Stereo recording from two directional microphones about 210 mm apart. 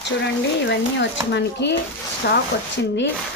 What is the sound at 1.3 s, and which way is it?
Speech, 55° left (ahead or behind).